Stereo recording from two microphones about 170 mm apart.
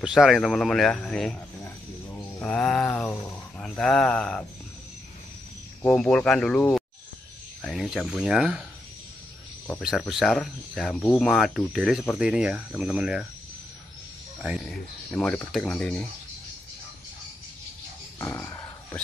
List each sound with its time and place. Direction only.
0.0 s speech: 5° right (ahead or behind)
1.6 s a sound: 15° left (ahead or behind)
5.8 s speech: 10° left (ahead or behind)
9.8 s speech: centre (ahead or behind)
14.6 s speech: 5° left (ahead or behind)
18.2 s speech: 15° left (ahead or behind)